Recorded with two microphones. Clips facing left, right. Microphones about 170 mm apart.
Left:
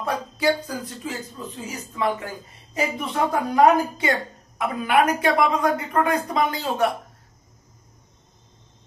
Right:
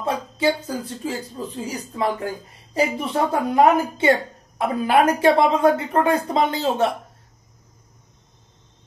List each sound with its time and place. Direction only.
0.0 s speech: 25° right (ahead or behind)